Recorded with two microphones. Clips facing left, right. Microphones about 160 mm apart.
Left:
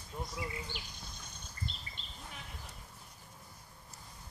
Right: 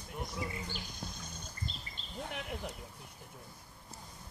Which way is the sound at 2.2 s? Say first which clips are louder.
Right 11 dB; 65° right (ahead or behind).